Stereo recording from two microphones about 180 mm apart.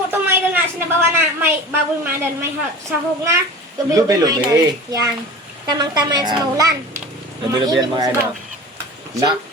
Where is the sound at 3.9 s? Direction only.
20° right (ahead or behind).